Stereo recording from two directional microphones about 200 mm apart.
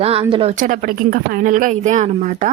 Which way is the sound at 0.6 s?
40° right (ahead or behind).